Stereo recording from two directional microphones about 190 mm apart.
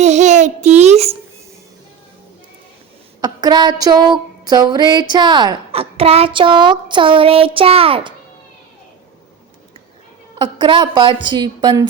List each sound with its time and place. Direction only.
0.0 s child singing: 40° right (ahead or behind)
3.2 s a sound: 20° right (ahead or behind)
5.1 s a woman's voice: 25° right (ahead or behind)
10.3 s a woman's voice: 25° right (ahead or behind)